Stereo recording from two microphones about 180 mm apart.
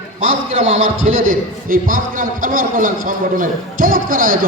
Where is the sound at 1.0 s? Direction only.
50° right (ahead or behind).